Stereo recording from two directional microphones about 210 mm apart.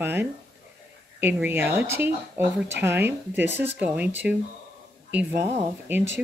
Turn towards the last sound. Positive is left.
turn(degrees=-10)  # may be behind; listen again after turning